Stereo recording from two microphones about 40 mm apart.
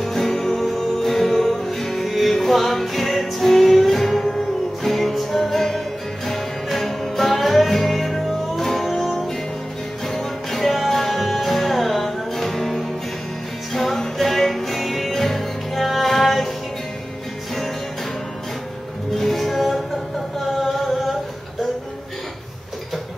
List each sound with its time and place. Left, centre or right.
0.0 s music: centre
19.1 s music: centre
20.6 s singing: centre